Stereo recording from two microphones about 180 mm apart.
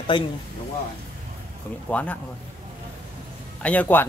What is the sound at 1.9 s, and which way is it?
Speech, 10° left (ahead or behind).